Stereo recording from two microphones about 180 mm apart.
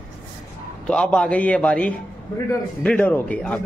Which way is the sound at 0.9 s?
5° left (ahead or behind).